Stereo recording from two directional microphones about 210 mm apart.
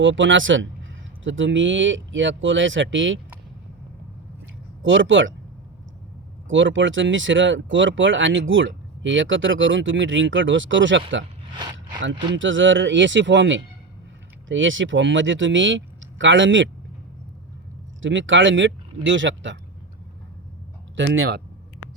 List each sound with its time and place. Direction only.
0.0 s speech: 65° right (ahead or behind)
4.8 s speech: 65° right (ahead or behind)
6.5 s speech: 65° right (ahead or behind)
11.5 s speech: 20° right (ahead or behind)
12.3 s speech: 65° right (ahead or behind)
18.0 s speech: 65° right (ahead or behind)
20.9 s speech: 60° right (ahead or behind)